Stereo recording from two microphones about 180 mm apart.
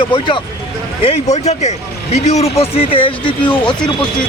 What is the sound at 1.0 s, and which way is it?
Speech, 40° left (ahead or behind).